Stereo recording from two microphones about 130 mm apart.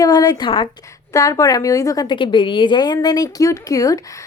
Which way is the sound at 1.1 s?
25° left (ahead or behind).